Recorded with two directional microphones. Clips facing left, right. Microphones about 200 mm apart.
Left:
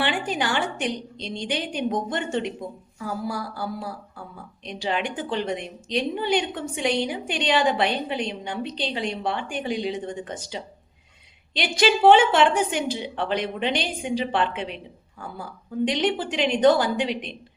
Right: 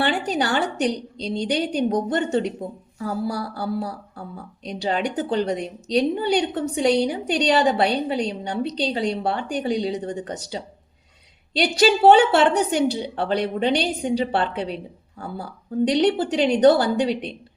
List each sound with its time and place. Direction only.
0.0 s a woman's voice: 40° right (ahead or behind)
4.6 s a woman's voice: 40° right (ahead or behind)